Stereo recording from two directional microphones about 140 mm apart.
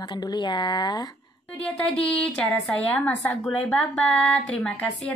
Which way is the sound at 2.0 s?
10° left (ahead or behind).